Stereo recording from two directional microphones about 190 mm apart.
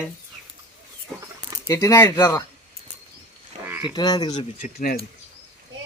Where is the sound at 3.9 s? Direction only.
20° left (ahead or behind).